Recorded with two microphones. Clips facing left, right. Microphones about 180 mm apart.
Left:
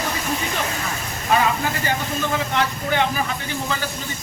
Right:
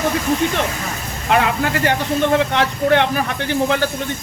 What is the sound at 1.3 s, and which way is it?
Speech, 70° right (ahead or behind).